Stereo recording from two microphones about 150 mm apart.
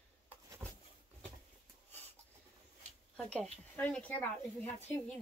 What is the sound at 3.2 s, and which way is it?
Speech, 5° left (ahead or behind).